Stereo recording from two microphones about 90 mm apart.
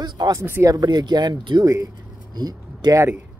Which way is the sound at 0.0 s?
50° right (ahead or behind).